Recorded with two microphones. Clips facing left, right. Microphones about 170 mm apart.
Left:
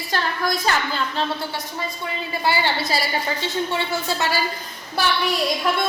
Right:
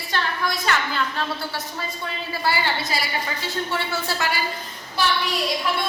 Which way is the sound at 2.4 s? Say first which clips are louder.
Left 2 dB; 25° left (ahead or behind).